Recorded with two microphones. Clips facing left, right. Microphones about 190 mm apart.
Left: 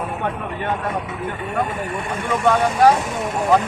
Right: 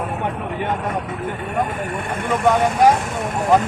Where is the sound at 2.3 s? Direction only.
10° right (ahead or behind).